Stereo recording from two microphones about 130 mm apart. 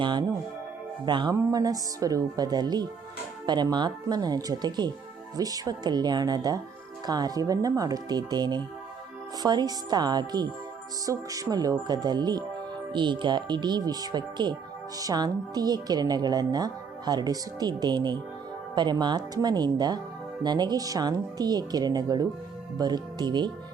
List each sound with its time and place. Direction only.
0.0 s speech: 35° right (ahead or behind)
1.4 s speech: 25° right (ahead or behind)